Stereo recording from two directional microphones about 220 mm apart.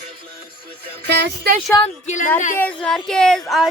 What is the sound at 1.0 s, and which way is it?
Music, 50° right (ahead or behind).